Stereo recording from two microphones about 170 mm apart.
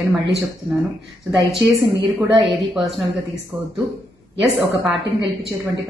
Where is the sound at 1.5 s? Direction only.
Centre (ahead or behind).